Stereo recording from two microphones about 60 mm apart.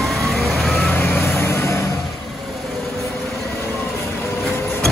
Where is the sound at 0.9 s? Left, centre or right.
Left.